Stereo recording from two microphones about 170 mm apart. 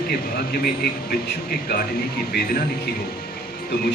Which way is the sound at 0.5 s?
65° left (ahead or behind).